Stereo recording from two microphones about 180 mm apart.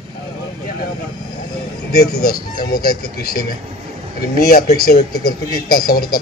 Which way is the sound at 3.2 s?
55° left (ahead or behind).